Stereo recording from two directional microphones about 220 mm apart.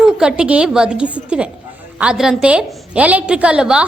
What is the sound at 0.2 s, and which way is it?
A woman's voice, 5° right (ahead or behind).